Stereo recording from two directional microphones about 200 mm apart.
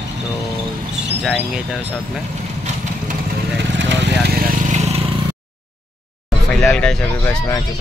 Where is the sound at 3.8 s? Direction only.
65° right (ahead or behind).